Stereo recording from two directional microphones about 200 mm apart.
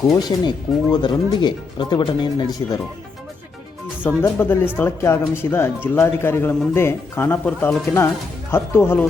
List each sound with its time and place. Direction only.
0.0 s speech: 20° left (ahead or behind)
4.2 s speech: 10° left (ahead or behind)